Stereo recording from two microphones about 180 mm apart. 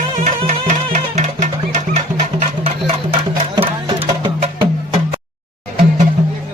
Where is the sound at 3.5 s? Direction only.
30° right (ahead or behind).